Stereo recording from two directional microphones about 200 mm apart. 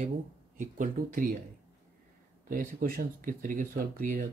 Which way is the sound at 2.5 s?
45° right (ahead or behind).